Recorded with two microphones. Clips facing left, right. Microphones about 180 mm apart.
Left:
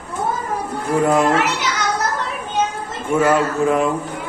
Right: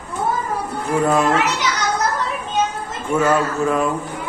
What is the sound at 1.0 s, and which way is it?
Speech, 20° left (ahead or behind).